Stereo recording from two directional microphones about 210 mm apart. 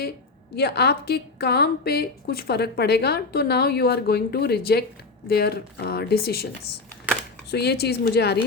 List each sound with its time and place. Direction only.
0.5 s a woman's voice: 50° left (ahead or behind)
7.5 s a woman's voice: 50° left (ahead or behind)